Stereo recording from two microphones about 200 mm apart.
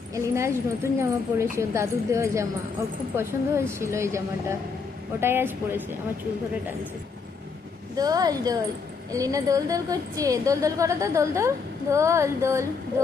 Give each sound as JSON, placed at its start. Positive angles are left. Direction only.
{"t": 0.1, "sound": "a woman's voice", "side_deg": -15}
{"t": 7.9, "sound": "a woman's voice", "side_deg": -20}